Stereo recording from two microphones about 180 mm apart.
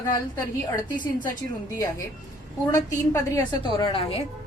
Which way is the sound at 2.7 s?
15° left (ahead or behind).